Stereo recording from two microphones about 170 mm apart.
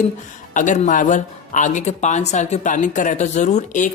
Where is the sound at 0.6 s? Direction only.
45° left (ahead or behind).